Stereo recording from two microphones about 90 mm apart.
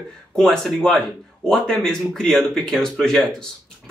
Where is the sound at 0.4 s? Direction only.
5° left (ahead or behind).